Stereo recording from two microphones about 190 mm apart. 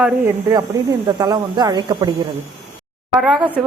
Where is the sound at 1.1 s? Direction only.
20° right (ahead or behind).